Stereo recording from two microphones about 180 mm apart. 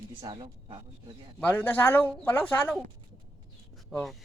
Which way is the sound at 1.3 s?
10° left (ahead or behind).